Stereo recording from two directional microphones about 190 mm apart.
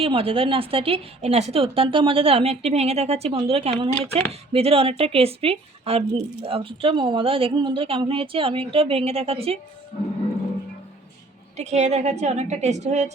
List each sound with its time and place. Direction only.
0.0 s a woman's voice: 30° right (ahead or behind)
11.5 s a woman's voice: 35° right (ahead or behind)